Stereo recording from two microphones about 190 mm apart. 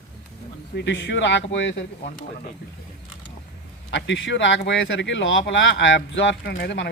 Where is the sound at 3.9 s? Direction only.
70° left (ahead or behind).